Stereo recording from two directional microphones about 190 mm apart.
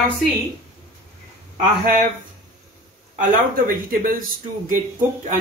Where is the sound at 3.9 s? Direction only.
45° right (ahead or behind).